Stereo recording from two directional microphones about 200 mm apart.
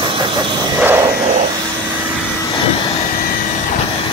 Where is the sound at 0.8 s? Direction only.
10° right (ahead or behind).